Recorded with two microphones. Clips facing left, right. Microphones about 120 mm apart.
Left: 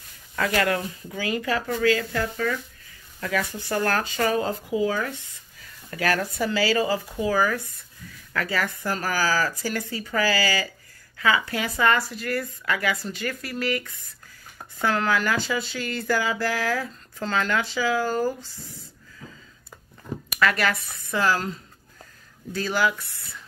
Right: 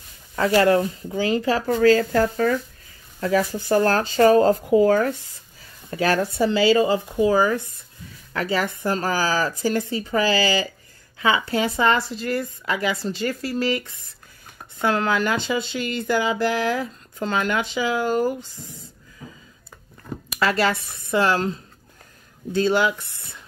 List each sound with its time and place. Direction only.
0.4 s speech: 30° right (ahead or behind); by 5.1 s 45° right (ahead or behind)
5.6 s speech: 25° right (ahead or behind)
19.2 s a sound: 20° right (ahead or behind)
20.3 s speech: 30° right (ahead or behind)